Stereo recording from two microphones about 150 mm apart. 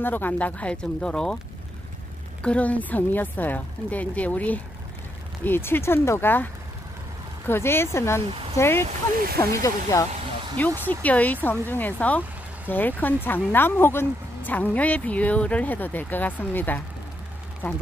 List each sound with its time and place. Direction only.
0.0 s speech: 10° left (ahead or behind)
2.4 s speech: 10° left (ahead or behind)
8.3 s speech: 35° right (ahead or behind)
8.5 s speech: 15° left (ahead or behind)